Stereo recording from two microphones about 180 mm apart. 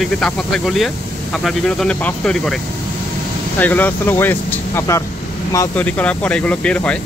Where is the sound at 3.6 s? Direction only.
10° left (ahead or behind).